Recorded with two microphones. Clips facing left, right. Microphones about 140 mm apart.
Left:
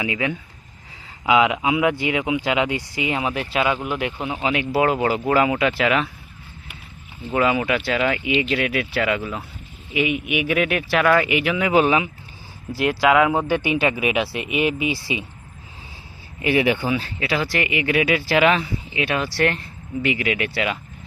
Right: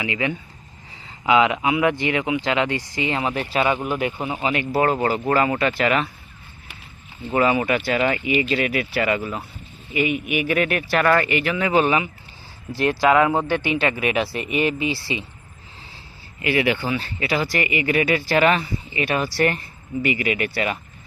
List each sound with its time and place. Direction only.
1.2 s speech: 5° left (ahead or behind)
7.3 s speech: centre (ahead or behind)
14.2 s speech: 5° left (ahead or behind)
16.4 s speech: 15° left (ahead or behind)
17.0 s speech: centre (ahead or behind)